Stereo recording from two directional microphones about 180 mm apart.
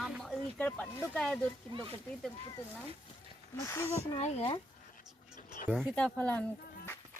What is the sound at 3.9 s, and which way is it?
Speech, 35° left (ahead or behind).